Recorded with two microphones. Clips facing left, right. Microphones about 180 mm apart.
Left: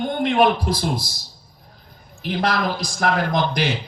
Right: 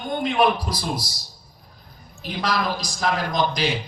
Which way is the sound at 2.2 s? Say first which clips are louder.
Left 3 dB; 60° left (ahead or behind).